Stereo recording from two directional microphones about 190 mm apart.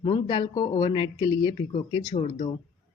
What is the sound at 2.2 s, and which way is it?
Speech, 35° left (ahead or behind).